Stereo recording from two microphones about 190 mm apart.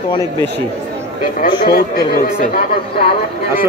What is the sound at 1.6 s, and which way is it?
Speech, 55° left (ahead or behind).